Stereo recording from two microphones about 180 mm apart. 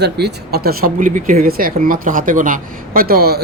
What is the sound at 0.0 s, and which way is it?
Speech, 65° right (ahead or behind).